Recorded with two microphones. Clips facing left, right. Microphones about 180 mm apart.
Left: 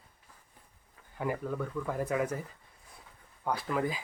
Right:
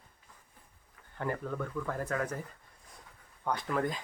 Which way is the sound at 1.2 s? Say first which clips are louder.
Left 2 dB; 5° left (ahead or behind).